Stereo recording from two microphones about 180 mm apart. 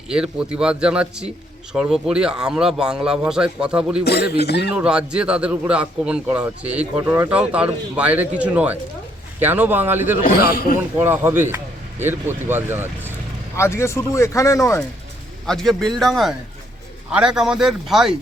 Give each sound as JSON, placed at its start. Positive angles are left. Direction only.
{"t": 0.1, "sound": "a man's voice", "side_deg": -5}
{"t": 4.0, "sound": "speech", "side_deg": 65}
{"t": 4.7, "sound": "a man's voice", "side_deg": -5}
{"t": 10.2, "sound": "speech", "side_deg": 55}
{"t": 10.8, "sound": "a man's voice", "side_deg": -10}
{"t": 13.6, "sound": "speech", "side_deg": 15}
{"t": 15.4, "sound": "a man's voice", "side_deg": 0}